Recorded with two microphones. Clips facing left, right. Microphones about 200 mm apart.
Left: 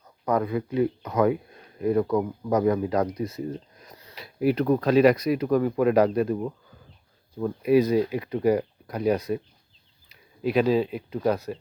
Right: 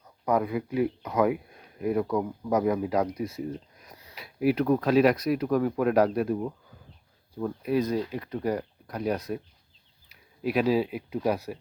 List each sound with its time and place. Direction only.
0.3 s speech: 10° right (ahead or behind)